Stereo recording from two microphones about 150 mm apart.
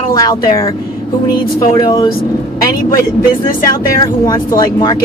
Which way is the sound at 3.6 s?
20° left (ahead or behind).